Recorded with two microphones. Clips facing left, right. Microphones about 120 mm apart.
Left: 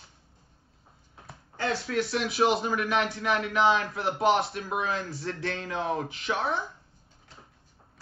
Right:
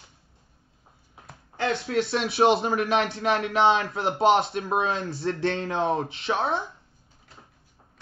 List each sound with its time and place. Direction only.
1.6 s speech: 25° right (ahead or behind)